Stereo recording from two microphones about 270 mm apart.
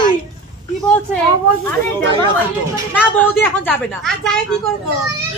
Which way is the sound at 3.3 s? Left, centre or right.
Centre.